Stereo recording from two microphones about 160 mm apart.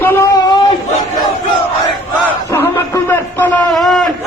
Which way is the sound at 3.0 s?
15° left (ahead or behind).